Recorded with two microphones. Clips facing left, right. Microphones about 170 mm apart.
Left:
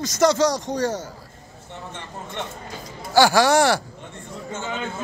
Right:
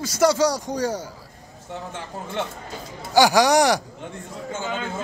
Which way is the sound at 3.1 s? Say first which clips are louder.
Even; 15° right (ahead or behind).